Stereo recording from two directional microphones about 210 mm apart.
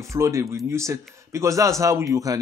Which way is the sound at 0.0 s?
15° right (ahead or behind).